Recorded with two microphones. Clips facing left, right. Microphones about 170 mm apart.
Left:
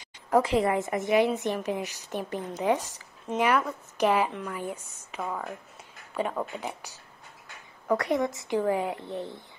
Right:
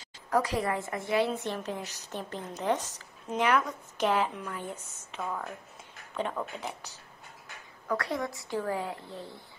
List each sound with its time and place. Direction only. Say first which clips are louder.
0.3 s a woman's voice: left 5 dB; 25° left (ahead or behind)
7.9 s a woman's voice: left 6 dB; 20° left (ahead or behind)